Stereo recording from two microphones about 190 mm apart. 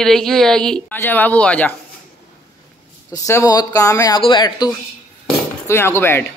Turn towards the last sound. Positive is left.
turn(degrees=10)  # may be behind; listen again after turning